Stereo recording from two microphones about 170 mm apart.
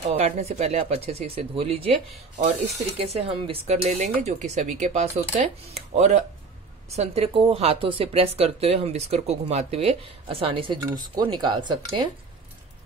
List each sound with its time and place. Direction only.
0.1 s speech: 35° right (ahead or behind)
3.0 s speech: 35° right (ahead or behind)